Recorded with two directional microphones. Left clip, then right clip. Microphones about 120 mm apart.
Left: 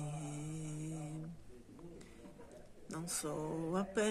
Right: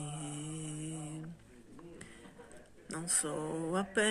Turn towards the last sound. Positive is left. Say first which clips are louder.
# right 4 dB
turn(degrees=20)  # may be behind; listen again after turning